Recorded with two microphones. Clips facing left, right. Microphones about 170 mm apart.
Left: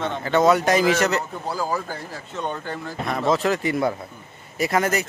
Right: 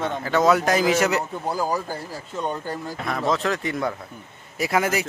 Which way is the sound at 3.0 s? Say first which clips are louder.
Left 3 dB; centre (ahead or behind).